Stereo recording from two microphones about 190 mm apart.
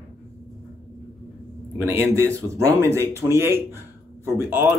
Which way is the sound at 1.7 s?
10° right (ahead or behind).